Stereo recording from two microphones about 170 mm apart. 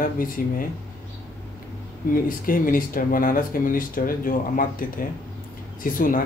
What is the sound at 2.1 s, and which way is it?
Speech, 55° left (ahead or behind).